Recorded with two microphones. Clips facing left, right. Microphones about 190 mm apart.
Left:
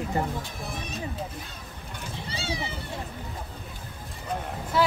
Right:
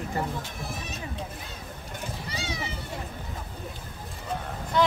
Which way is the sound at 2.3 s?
30° left (ahead or behind).